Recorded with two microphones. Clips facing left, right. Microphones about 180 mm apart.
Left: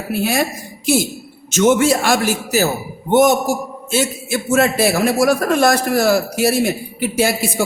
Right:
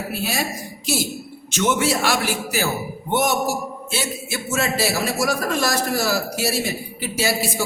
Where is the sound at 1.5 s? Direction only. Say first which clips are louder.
Left 7 dB; 45° left (ahead or behind).